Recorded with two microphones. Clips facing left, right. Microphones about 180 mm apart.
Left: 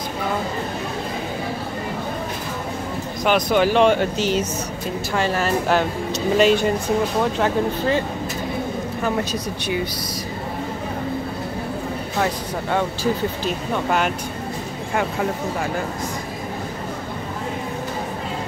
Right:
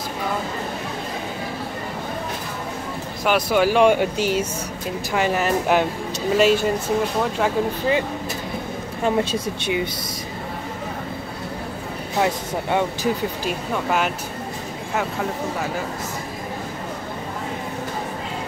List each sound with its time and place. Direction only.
3.3 s speech: 5° right (ahead or behind)
6.3 s speech: 5° right (ahead or behind)
9.0 s speech: 25° right (ahead or behind)
12.7 s speech: 10° right (ahead or behind)